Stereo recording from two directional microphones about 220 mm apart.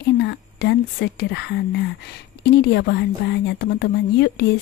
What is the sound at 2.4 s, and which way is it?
Speech, 50° left (ahead or behind).